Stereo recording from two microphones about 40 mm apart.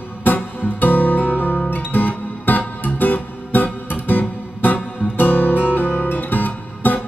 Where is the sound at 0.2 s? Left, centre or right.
Left.